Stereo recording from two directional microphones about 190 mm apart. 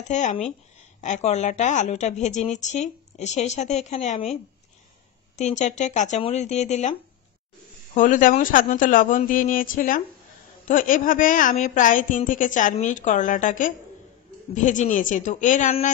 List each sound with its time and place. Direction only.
0.1 s a woman's voice: 40° left (ahead or behind)
5.4 s a woman's voice: 40° left (ahead or behind)